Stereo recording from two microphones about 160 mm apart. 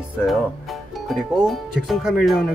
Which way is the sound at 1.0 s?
Centre (ahead or behind).